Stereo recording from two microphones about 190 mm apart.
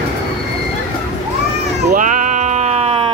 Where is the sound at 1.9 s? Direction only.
40° right (ahead or behind).